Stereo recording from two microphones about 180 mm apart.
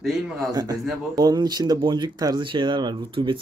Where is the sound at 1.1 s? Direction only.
20° right (ahead or behind).